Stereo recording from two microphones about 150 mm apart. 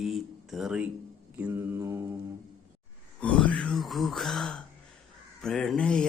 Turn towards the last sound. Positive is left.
turn(degrees=5)  # may be behind; listen again after turning